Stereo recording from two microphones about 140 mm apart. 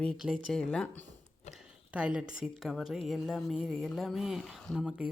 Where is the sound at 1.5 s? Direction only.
5° right (ahead or behind).